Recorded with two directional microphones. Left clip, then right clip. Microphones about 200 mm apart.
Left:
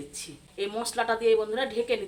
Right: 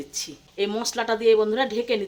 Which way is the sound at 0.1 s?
45° right (ahead or behind).